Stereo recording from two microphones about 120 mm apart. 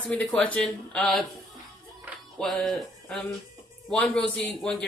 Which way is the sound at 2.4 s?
Centre (ahead or behind).